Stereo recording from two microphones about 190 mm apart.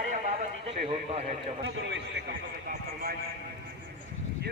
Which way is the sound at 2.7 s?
50° right (ahead or behind).